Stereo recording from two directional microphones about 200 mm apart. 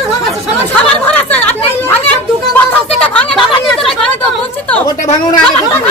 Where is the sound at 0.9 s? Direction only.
5° left (ahead or behind).